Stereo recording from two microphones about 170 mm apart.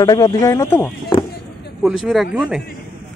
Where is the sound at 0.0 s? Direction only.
20° left (ahead or behind).